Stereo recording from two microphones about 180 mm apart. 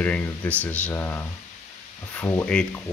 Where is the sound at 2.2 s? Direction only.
10° left (ahead or behind).